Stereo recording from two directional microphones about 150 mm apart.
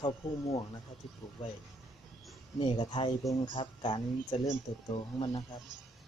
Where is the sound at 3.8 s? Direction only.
35° left (ahead or behind).